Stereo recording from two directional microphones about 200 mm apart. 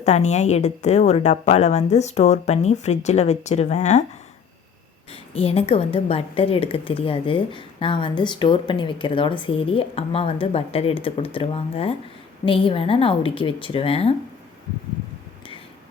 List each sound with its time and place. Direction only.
0.0 s a woman's voice: 35° left (ahead or behind)
5.1 s a woman's voice: 30° left (ahead or behind)